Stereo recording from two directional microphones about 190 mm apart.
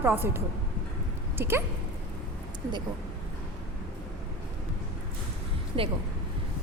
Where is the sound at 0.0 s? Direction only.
10° right (ahead or behind).